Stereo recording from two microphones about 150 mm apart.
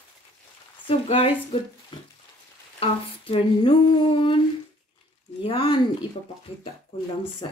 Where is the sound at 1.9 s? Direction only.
35° left (ahead or behind).